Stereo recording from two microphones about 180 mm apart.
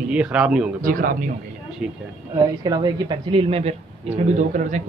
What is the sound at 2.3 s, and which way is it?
Speech, 25° right (ahead or behind).